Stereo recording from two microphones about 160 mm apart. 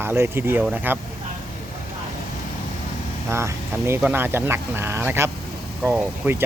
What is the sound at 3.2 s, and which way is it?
Speech, 15° right (ahead or behind).